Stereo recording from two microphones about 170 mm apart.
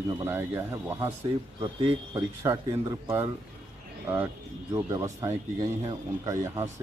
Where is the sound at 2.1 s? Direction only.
15° right (ahead or behind).